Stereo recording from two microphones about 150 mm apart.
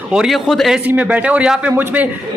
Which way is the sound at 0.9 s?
10° right (ahead or behind).